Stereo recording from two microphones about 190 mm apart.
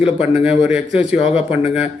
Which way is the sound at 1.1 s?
35° left (ahead or behind).